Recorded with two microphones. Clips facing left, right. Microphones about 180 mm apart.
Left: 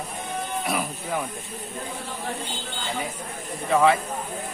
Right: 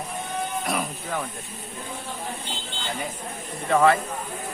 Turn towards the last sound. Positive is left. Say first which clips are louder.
# even
turn(degrees=0)  # may be behind; listen again after turning